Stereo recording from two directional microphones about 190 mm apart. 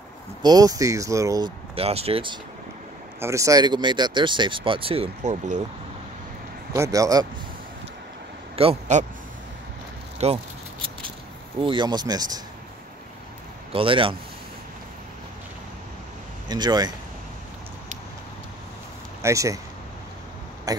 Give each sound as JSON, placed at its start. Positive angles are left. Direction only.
{"t": 0.4, "sound": "speech", "side_deg": -20}
{"t": 1.8, "sound": "speech", "side_deg": -30}
{"t": 3.2, "sound": "speech", "side_deg": -15}
{"t": 6.7, "sound": "speech", "side_deg": -15}
{"t": 8.5, "sound": "speech", "side_deg": -35}
{"t": 10.1, "sound": "speech", "side_deg": -35}
{"t": 11.6, "sound": "speech", "side_deg": -25}
{"t": 13.7, "sound": "speech", "side_deg": -30}
{"t": 16.4, "sound": "speech", "side_deg": -20}
{"t": 19.2, "sound": "speech", "side_deg": -15}
{"t": 20.7, "sound": "speech", "side_deg": -20}